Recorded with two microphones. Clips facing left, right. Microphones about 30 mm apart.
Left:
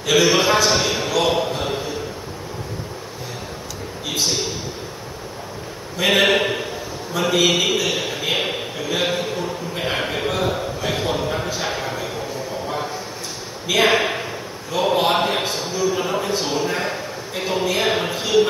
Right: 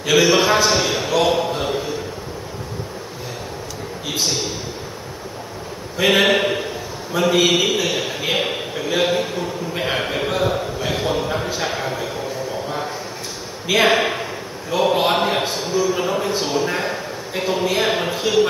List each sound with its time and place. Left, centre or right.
0.1 s a man's voice: centre
5.9 s a man's voice: centre
13.7 s speech: centre
14.7 s a sound: centre
16.6 s a man's voice: centre